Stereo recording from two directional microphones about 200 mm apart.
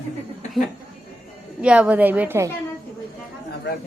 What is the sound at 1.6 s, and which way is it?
Speech, 5° right (ahead or behind).